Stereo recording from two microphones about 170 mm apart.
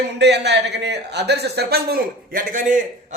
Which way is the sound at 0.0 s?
85° right.